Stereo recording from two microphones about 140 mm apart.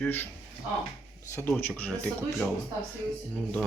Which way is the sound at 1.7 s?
10° left (ahead or behind).